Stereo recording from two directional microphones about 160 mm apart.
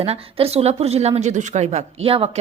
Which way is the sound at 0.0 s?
40° right (ahead or behind).